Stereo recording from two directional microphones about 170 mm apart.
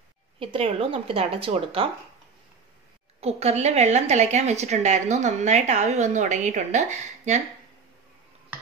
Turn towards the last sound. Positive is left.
turn(degrees=-45)  # may be behind; listen again after turning